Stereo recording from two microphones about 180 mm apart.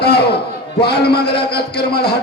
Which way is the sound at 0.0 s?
65° left (ahead or behind).